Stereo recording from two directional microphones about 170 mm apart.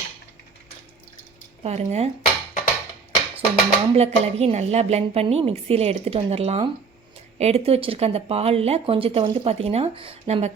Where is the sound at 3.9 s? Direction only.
35° right (ahead or behind).